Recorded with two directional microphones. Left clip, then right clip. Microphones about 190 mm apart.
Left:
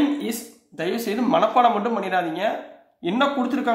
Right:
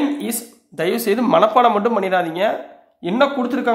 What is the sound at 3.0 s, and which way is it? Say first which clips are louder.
Speech: right 4 dB; 25° right (ahead or behind).